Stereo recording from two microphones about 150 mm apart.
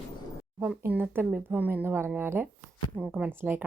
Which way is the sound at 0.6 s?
15° right (ahead or behind).